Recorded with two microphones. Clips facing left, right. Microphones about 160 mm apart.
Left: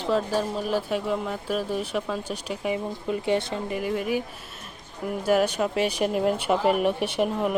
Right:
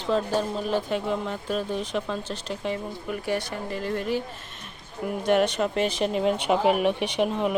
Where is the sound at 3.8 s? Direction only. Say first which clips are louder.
Even; 10° left (ahead or behind).